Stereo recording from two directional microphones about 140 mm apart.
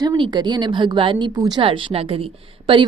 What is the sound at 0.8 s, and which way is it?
Speech, 35° right (ahead or behind).